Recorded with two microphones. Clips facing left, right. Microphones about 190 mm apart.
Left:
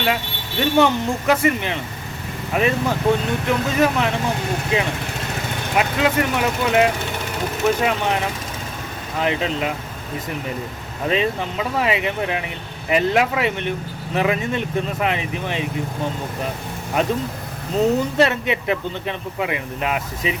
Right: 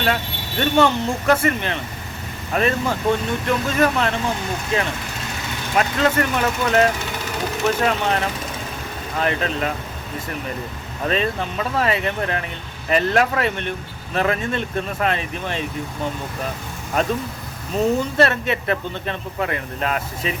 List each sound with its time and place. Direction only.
0.6 s speech: 15° left (ahead or behind)
5.7 s speech: 15° left (ahead or behind)
11.1 s speech: 15° left (ahead or behind)
17.7 s speech: 15° left (ahead or behind)